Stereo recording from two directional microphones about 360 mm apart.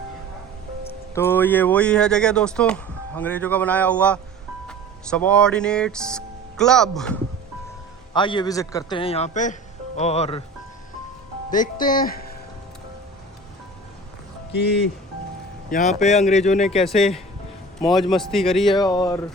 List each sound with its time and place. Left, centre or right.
1.1 s speech: centre
8.1 s speech: centre
11.5 s speech: left
16.0 s speech: centre
16.6 s speech: centre
18.8 s speech: centre